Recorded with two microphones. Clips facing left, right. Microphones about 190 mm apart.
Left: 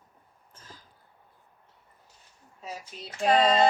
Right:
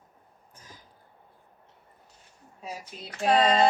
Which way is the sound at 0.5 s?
15° right (ahead or behind).